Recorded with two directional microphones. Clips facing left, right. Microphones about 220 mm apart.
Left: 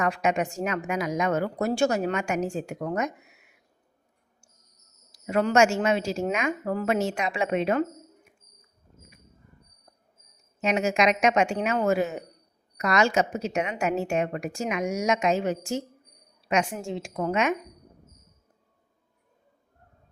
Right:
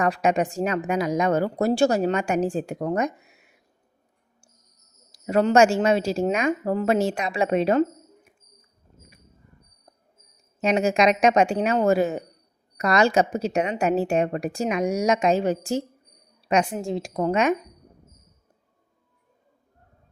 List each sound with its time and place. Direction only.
0.0 s a woman's voice: 35° right (ahead or behind)
5.1 s a woman's voice: 35° right (ahead or behind)
10.6 s a woman's voice: 35° right (ahead or behind)